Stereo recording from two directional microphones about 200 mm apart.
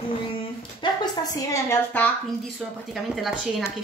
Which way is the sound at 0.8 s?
25° left (ahead or behind).